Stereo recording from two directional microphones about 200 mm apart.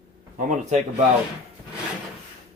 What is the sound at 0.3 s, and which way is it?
Speech, 40° right (ahead or behind).